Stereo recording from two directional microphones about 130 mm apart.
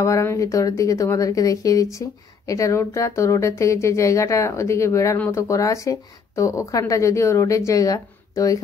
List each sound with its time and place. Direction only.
0.0 s speech: 20° left (ahead or behind)